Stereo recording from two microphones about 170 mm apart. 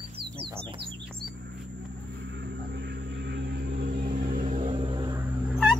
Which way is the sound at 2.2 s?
90° right.